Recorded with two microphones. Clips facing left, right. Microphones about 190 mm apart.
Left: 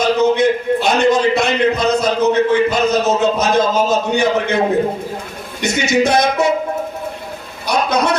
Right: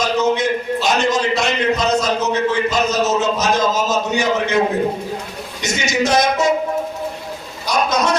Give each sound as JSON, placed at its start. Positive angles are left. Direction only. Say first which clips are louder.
{"t": 0.0, "sound": "a man's voice", "louder": "left 4 dB", "side_deg": 60}
{"t": 5.6, "sound": "speech", "louder": "left 4 dB", "side_deg": 60}
{"t": 7.7, "sound": "a sound", "louder": "left 2 dB", "side_deg": 60}